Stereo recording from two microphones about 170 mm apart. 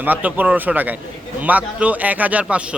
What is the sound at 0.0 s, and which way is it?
Speech, 10° right (ahead or behind).